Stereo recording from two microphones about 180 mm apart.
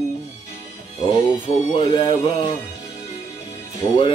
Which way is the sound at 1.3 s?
30° left (ahead or behind).